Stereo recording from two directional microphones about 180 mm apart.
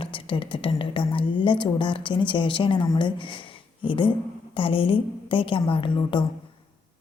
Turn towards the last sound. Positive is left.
turn(degrees=25)  # may be behind; listen again after turning